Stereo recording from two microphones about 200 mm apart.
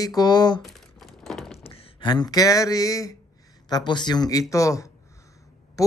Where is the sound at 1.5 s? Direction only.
30° left (ahead or behind).